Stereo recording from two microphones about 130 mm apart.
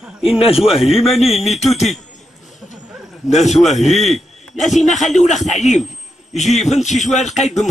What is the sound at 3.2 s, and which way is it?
Speech, 65° left (ahead or behind).